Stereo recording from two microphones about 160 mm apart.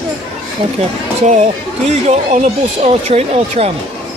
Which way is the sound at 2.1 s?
45° right (ahead or behind).